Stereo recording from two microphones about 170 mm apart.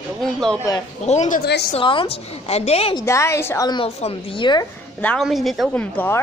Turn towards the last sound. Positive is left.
turn(degrees=10)  # may be behind; listen again after turning